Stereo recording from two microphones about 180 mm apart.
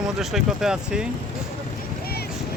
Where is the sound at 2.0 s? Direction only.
60° left (ahead or behind).